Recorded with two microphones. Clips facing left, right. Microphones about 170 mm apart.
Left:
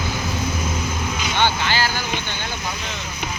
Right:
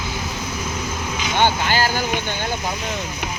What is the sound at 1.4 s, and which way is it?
Vehicle, 45° right (ahead or behind).